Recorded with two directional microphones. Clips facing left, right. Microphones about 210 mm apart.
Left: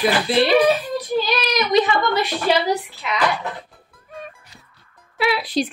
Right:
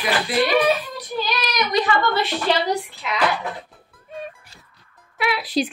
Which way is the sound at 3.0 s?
Centre (ahead or behind).